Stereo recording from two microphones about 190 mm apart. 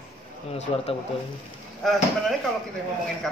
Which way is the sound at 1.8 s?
Centre (ahead or behind).